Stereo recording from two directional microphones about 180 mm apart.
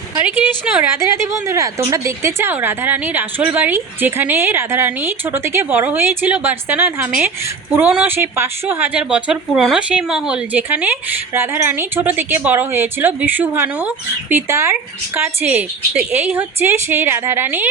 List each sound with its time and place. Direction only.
0.3 s a woman's voice: 10° right (ahead or behind)